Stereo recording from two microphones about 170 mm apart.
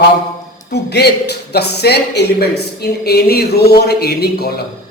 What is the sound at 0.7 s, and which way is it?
A woman's voice, 75° left (ahead or behind).